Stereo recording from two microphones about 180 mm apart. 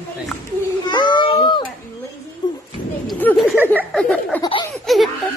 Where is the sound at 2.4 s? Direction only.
25° left (ahead or behind).